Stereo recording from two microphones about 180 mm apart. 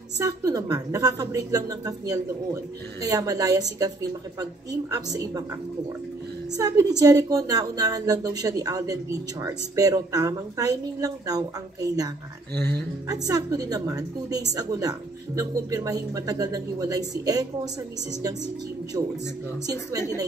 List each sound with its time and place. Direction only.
0.2 s a woman's voice: 20° right (ahead or behind)
6.5 s a woman's voice: 20° right (ahead or behind)
13.1 s a woman's voice: 20° right (ahead or behind)
19.6 s a woman's voice: 20° right (ahead or behind)